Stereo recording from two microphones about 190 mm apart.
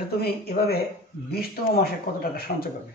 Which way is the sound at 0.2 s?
55° left (ahead or behind).